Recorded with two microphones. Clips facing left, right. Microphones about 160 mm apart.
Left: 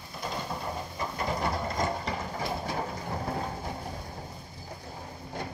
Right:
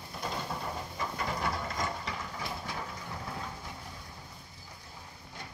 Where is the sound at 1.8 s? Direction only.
40° left (ahead or behind).